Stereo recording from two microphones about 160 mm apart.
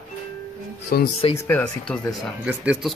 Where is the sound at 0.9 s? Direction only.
65° left (ahead or behind).